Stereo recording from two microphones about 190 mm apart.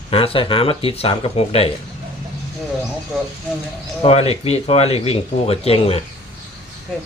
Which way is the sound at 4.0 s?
30° left (ahead or behind).